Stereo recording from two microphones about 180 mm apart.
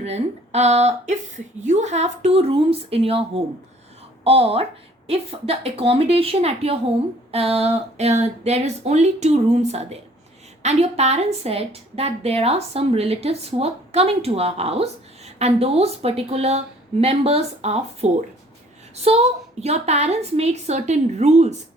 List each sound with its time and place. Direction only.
0.0 s a woman's voice: 35° right (ahead or behind)